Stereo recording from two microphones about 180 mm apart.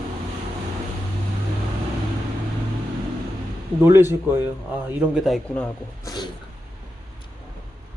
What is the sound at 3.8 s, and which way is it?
A man's voice, 15° right (ahead or behind).